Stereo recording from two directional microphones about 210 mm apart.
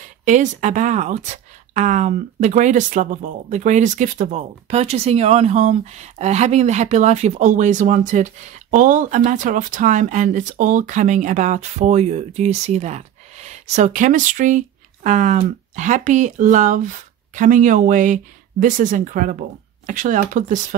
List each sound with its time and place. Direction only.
0.2 s speech: 35° right (ahead or behind)